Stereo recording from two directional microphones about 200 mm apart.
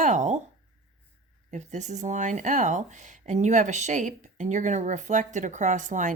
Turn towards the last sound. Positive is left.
turn(degrees=-40)  # may be behind; listen again after turning